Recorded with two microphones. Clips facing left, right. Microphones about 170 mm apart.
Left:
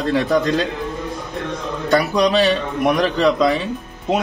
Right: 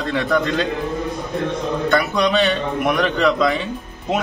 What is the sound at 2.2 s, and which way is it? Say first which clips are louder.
A man's voice: left 2 dB; 35° left (ahead or behind).